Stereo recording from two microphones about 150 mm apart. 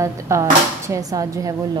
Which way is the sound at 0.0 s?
20° right (ahead or behind).